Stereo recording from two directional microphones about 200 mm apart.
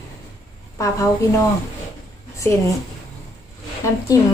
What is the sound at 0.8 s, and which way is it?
Speech, 15° left (ahead or behind).